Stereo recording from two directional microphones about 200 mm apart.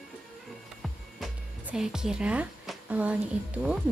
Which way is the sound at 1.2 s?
5° right (ahead or behind).